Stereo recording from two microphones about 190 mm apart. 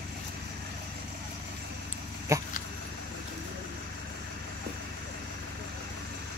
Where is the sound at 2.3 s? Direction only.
15° right (ahead or behind).